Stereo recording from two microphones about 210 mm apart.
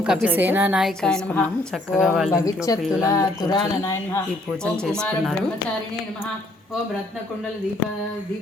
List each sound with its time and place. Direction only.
0.0 s a woman's voice: 5° right (ahead or behind)
2.7 s music: 15° left (ahead or behind)
4.6 s a woman's voice: 5° left (ahead or behind)